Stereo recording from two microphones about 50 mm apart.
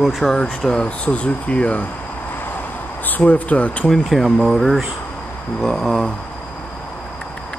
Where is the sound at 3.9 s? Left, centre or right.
Centre.